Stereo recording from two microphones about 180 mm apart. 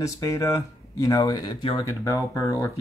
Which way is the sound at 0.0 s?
20° left (ahead or behind).